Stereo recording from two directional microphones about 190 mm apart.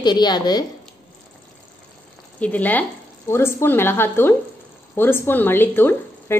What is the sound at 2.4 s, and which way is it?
A woman's voice, 10° left (ahead or behind).